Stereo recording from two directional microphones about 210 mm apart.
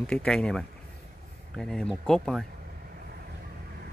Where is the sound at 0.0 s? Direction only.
5° left (ahead or behind).